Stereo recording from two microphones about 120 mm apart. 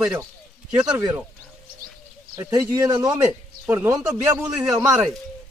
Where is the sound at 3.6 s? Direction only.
15° right (ahead or behind).